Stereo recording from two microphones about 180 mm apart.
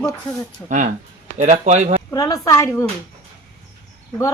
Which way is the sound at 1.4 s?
40° right (ahead or behind).